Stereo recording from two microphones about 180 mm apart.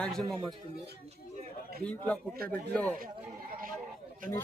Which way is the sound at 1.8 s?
5° left (ahead or behind).